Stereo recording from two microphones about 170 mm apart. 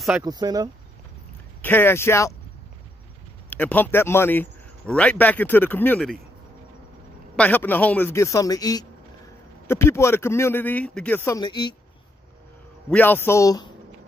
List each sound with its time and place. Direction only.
0.2 s speech: 20° right (ahead or behind)
1.6 s a man's voice: 10° left (ahead or behind)
3.4 s a man's voice: 10° left (ahead or behind)
7.3 s a man's voice: 10° left (ahead or behind)
11.4 s speech: 25° left (ahead or behind)
12.9 s a man's voice: 10° left (ahead or behind)